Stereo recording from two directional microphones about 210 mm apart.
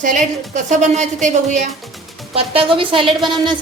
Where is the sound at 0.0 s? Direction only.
35° right (ahead or behind).